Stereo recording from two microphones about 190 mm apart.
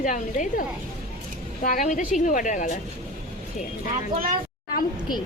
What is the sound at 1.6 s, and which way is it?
Speech, 45° left (ahead or behind).